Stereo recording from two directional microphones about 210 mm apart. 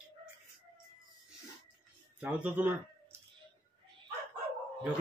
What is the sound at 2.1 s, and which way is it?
Speech, 5° right (ahead or behind).